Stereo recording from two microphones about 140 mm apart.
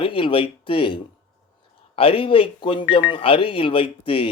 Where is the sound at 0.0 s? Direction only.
40° left (ahead or behind).